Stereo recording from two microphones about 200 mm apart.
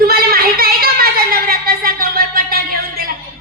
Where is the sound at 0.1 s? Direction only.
50° right (ahead or behind).